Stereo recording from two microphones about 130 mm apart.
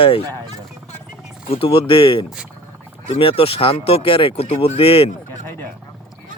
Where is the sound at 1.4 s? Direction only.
45° left (ahead or behind).